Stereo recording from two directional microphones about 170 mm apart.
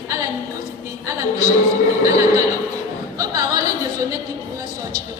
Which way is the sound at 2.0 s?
20° right (ahead or behind).